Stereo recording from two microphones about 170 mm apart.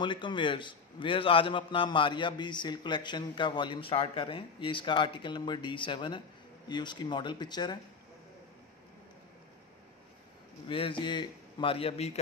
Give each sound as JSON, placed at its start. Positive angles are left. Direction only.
{"t": 0.0, "sound": "a man's voice", "side_deg": 25}
{"t": 10.7, "sound": "a man's voice", "side_deg": 30}